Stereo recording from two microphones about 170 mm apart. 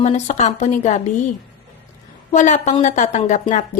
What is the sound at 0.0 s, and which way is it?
A woman's voice, 40° left (ahead or behind).